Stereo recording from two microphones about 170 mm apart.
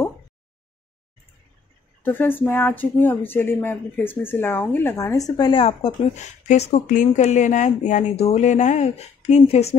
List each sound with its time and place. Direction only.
2.0 s speech: 10° left (ahead or behind); by 9.8 s 40° left (ahead or behind)